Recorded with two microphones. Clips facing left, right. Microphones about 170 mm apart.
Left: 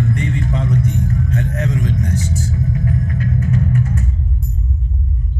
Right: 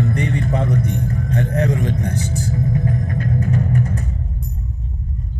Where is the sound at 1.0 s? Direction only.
35° right (ahead or behind).